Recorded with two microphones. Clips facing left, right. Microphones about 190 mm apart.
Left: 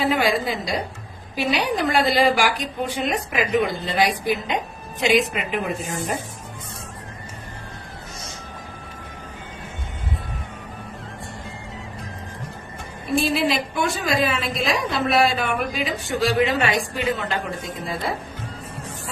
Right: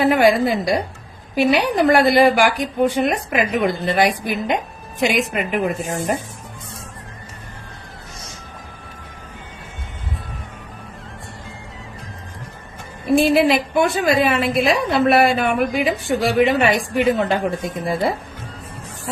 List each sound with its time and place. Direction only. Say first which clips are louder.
0.0 s a woman's voice: right 6 dB; 50° right (ahead or behind)
13.1 s a woman's voice: right 7 dB; 60° right (ahead or behind)